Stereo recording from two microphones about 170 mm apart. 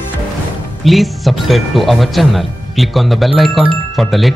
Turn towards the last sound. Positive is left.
turn(degrees=0)  # may be behind; listen again after turning